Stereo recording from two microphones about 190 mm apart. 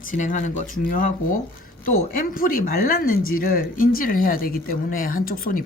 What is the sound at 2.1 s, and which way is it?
Speech, 45° left (ahead or behind).